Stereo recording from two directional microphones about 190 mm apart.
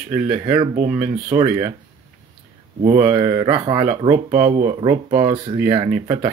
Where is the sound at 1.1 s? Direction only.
20° right (ahead or behind).